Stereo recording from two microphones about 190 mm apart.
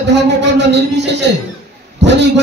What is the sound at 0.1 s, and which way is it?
A man's voice, 65° right (ahead or behind).